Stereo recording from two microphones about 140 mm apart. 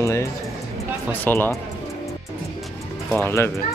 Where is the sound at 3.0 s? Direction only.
15° left (ahead or behind).